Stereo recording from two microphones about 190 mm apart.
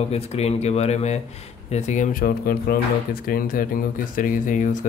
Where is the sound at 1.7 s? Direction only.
40° left (ahead or behind).